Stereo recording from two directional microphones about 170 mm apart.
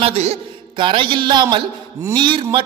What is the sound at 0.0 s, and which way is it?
A man's voice, 40° right (ahead or behind).